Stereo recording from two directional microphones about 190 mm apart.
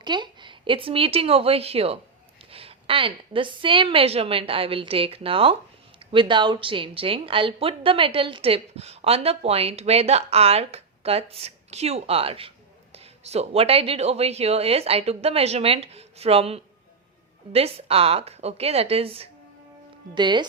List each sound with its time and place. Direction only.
0.0 s a woman's voice: 25° right (ahead or behind)